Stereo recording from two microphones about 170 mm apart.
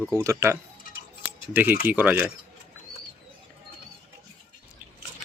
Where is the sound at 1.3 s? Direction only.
10° right (ahead or behind).